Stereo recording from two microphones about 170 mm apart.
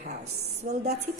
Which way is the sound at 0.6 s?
55° right (ahead or behind).